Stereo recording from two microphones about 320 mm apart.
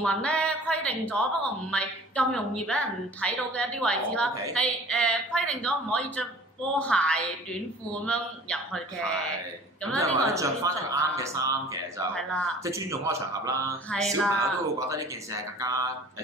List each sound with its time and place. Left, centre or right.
0.0 s a sound: centre
1.7 s a woman's voice: centre
9.9 s a man's voice: centre
12.1 s a woman's voice: centre
12.6 s a man's voice: centre
13.8 s a woman's voice: centre
14.9 s a man's voice: centre